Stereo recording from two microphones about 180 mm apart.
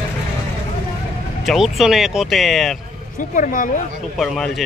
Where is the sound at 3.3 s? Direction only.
50° left (ahead or behind).